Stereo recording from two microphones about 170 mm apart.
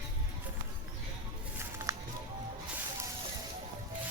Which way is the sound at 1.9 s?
20° right (ahead or behind).